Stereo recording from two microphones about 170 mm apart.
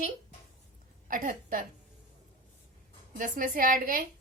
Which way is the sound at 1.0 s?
50° right (ahead or behind).